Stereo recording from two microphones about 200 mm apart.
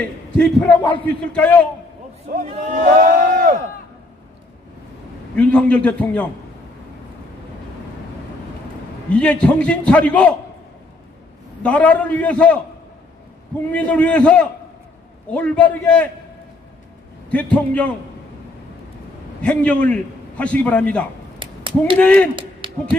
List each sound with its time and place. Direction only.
0.4 s a man's voice: 5° left (ahead or behind)
2.3 s speech: 45° right (ahead or behind)
2.8 s a sound: 45° right (ahead or behind)
5.3 s a man's voice: 5° left (ahead or behind)
9.1 s a man's voice: 5° left (ahead or behind)
11.6 s a man's voice: 5° left (ahead or behind)
13.7 s a man's voice: 5° left (ahead or behind)
17.3 s a man's voice: 5° left (ahead or behind)
19.4 s a man's voice: 5° left (ahead or behind)
21.4 s a sound: 25° right (ahead or behind)
21.9 s a man's voice: 5° left (ahead or behind)
22.6 s a sound: 25° right (ahead or behind)